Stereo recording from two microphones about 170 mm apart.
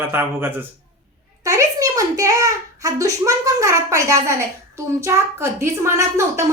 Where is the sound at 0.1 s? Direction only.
15° right (ahead or behind).